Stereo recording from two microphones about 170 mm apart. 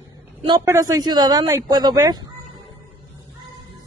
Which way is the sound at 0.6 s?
20° right (ahead or behind).